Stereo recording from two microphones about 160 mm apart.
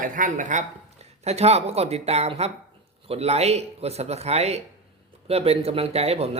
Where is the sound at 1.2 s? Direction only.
40° right (ahead or behind).